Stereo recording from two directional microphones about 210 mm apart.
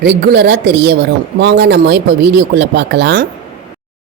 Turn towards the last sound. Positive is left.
turn(degrees=-50)  # may be behind; listen again after turning